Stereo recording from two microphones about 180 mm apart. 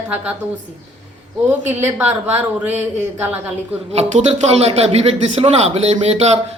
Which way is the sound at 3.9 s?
35° right (ahead or behind).